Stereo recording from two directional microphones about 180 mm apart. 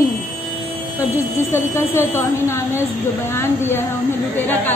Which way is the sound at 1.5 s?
15° left (ahead or behind).